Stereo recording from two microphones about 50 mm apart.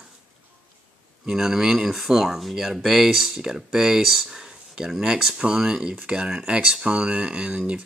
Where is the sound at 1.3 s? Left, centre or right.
Centre.